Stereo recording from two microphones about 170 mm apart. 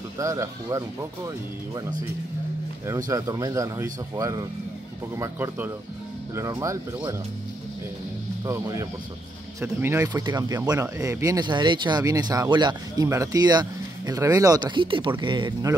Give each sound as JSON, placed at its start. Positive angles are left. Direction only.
{"t": 0.2, "sound": "speech", "side_deg": -20}
{"t": 3.1, "sound": "speech", "side_deg": -20}
{"t": 8.5, "sound": "speech", "side_deg": -20}